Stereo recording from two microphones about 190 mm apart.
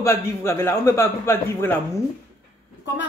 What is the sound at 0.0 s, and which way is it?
A man's voice, 15° left (ahead or behind).